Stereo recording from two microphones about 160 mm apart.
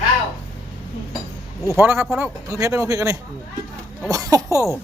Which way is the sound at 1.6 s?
15° right (ahead or behind).